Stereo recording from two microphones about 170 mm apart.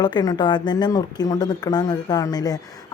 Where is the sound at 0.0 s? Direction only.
25° left (ahead or behind).